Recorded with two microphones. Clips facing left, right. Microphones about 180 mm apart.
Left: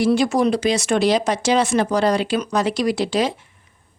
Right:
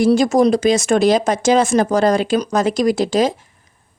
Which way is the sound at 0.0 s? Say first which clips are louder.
Right 4 dB; 45° right (ahead or behind).